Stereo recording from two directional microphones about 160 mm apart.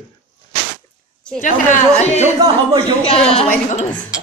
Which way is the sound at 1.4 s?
50° left (ahead or behind).